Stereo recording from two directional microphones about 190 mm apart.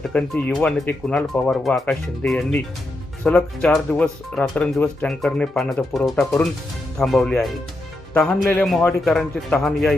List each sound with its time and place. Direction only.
0.0 s speech: 5° left (ahead or behind)